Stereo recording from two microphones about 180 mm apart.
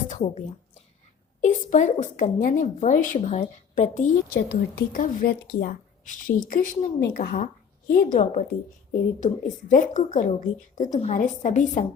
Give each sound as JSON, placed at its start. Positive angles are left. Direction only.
{"t": 0.1, "sound": "a woman's voice", "side_deg": 40}
{"t": 4.4, "sound": "speech", "side_deg": 60}